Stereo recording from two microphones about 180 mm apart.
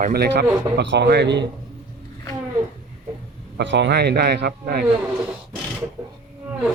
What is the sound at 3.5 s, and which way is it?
Speech, 75° right (ahead or behind).